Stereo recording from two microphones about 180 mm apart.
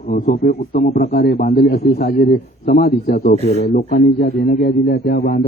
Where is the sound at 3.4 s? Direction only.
35° left (ahead or behind).